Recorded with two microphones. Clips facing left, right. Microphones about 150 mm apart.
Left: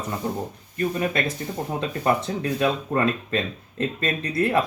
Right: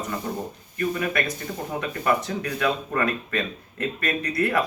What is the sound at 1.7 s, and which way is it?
Speech, 25° left (ahead or behind).